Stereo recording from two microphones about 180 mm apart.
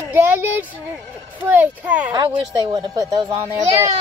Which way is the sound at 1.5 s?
10° right (ahead or behind).